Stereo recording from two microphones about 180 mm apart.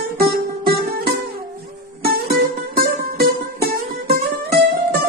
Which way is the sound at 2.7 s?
60° right (ahead or behind).